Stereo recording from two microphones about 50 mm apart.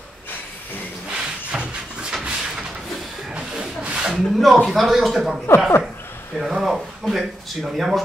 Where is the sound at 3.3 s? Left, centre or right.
Centre.